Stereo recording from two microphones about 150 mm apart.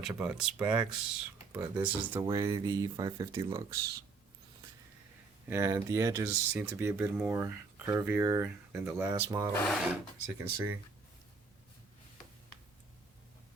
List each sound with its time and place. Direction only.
0.1 s speech: 10° right (ahead or behind)
2.2 s speech: 20° right (ahead or behind)
5.5 s speech: 20° right (ahead or behind)
9.6 s speech: centre (ahead or behind)
10.2 s speech: 15° right (ahead or behind)